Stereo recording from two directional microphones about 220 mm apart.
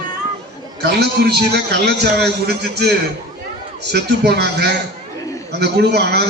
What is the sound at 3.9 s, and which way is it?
A man's voice, 50° right (ahead or behind).